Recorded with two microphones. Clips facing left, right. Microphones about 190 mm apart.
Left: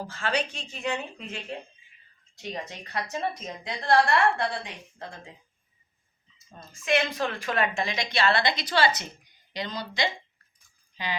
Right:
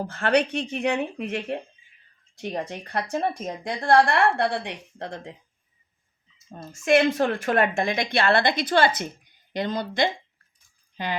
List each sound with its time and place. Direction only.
0.0 s a woman's voice: 60° right (ahead or behind)
6.5 s a woman's voice: 45° right (ahead or behind)